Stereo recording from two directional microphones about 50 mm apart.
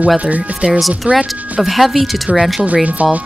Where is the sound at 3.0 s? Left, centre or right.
Right.